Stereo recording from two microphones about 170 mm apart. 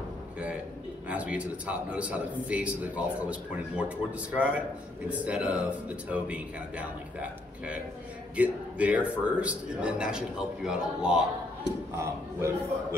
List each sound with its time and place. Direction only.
1.0 s a man's voice: 10° right (ahead or behind)
12.0 s a man's voice: 15° right (ahead or behind)